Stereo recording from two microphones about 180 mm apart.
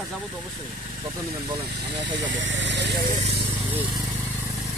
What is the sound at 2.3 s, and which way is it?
Speech, 90° right.